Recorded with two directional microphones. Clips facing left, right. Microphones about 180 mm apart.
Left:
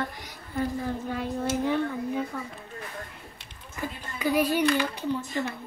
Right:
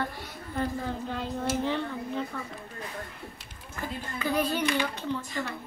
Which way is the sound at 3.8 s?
15° left (ahead or behind).